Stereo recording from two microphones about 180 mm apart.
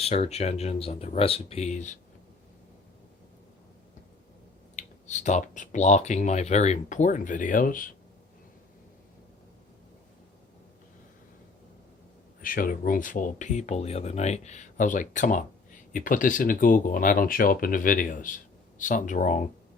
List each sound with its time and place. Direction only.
0.0 s speech: 35° left (ahead or behind)
4.8 s speech: 40° left (ahead or behind)
12.4 s speech: 50° left (ahead or behind)